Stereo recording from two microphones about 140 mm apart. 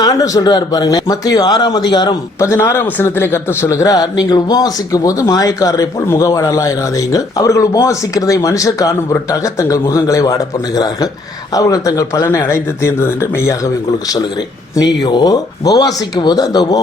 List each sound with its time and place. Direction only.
0.0 s a man's voice: 25° left (ahead or behind)
2.4 s a man's voice: 20° left (ahead or behind)
14.8 s a man's voice: 30° left (ahead or behind)